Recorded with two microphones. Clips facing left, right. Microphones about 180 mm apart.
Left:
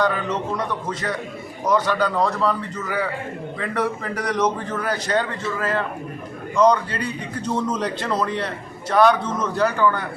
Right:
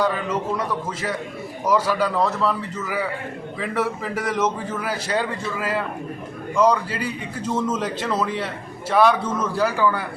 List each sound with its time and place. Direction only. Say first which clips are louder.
0.0 s a man's voice: even; 5° right (ahead or behind)